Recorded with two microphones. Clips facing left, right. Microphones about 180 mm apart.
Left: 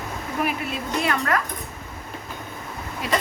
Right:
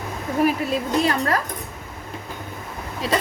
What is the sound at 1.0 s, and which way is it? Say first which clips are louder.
Speech: right 1 dB; 35° right (ahead or behind).